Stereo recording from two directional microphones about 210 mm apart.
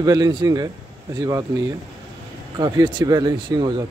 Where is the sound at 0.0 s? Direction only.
20° right (ahead or behind).